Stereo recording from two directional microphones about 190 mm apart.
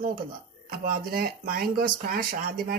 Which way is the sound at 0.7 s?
50° right (ahead or behind).